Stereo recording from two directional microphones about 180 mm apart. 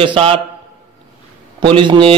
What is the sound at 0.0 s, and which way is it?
Speech, 30° right (ahead or behind).